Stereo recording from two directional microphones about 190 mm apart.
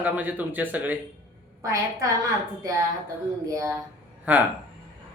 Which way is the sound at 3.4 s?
15° right (ahead or behind).